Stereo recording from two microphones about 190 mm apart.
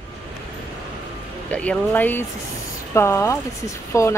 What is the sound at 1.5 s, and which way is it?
Speech, 5° left (ahead or behind).